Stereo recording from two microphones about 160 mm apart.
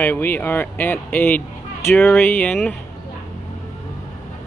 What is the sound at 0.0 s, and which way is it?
Speech, 10° left (ahead or behind).